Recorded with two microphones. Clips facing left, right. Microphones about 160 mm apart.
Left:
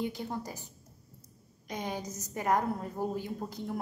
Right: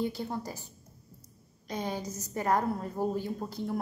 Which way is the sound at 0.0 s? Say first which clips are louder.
Right 2 dB; 15° left (ahead or behind).